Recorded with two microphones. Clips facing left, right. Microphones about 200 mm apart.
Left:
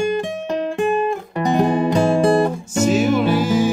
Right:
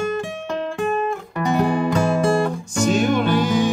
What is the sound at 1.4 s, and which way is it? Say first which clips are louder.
Music: left 2 dB; 35° left (ahead or behind).